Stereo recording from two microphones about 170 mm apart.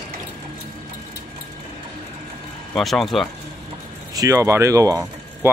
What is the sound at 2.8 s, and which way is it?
Speech, centre (ahead or behind).